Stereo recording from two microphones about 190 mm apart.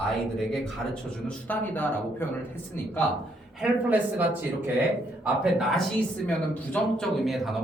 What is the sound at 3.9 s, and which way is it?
Speech, 10° right (ahead or behind).